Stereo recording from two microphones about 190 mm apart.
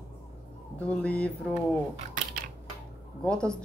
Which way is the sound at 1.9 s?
45° right (ahead or behind).